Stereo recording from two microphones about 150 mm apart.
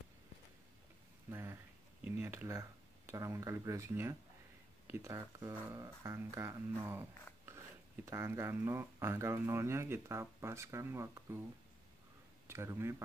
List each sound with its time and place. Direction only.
1.3 s a sound: 15° right (ahead or behind)
3.1 s speech: 20° right (ahead or behind)
12.4 s speech: 15° right (ahead or behind)